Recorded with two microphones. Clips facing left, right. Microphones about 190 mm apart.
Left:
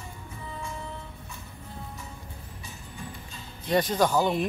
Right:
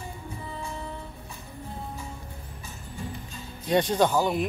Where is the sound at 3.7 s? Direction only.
20° right (ahead or behind).